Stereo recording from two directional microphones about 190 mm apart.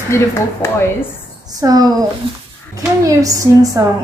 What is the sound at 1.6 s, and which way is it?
Speech, 20° right (ahead or behind).